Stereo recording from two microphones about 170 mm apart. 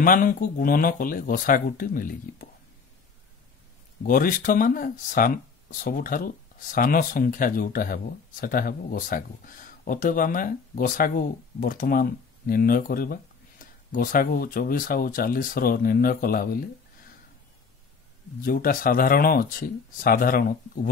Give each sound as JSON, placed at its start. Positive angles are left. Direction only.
{"t": 0.0, "sound": "speech", "side_deg": 55}
{"t": 4.0, "sound": "speech", "side_deg": 55}
{"t": 18.4, "sound": "speech", "side_deg": 55}